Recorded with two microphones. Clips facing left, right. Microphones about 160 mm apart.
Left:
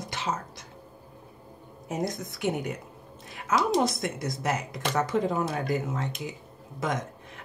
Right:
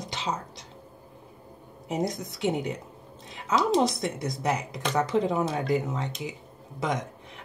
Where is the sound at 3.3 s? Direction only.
20° right (ahead or behind).